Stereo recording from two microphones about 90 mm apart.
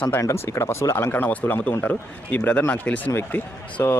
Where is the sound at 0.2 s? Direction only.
35° left (ahead or behind).